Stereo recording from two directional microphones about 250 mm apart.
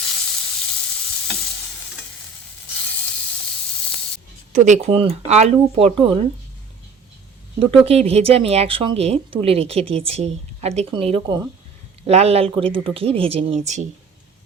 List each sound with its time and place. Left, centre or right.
4.5 s speech: right
7.6 s speech: right